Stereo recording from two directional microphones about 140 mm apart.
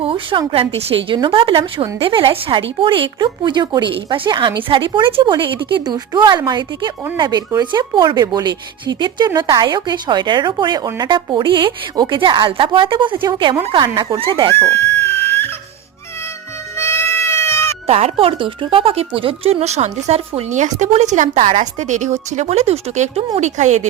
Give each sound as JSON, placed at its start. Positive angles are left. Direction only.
{"t": 0.0, "sound": "speech", "side_deg": -40}
{"t": 14.7, "sound": "music", "side_deg": 15}
{"t": 16.7, "sound": "goat", "side_deg": 15}
{"t": 17.8, "sound": "speech", "side_deg": -50}